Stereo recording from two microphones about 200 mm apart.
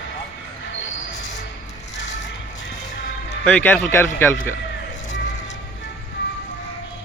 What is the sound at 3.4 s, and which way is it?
Speech, 10° left (ahead or behind).